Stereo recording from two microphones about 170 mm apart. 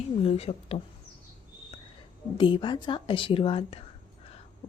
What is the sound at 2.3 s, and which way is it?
A woman's voice, 30° left (ahead or behind).